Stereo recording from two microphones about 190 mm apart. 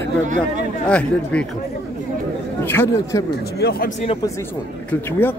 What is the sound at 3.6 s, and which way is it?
Speech, 55° left (ahead or behind).